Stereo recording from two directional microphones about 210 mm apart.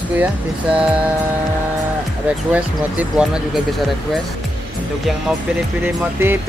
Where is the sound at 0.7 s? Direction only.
5° right (ahead or behind).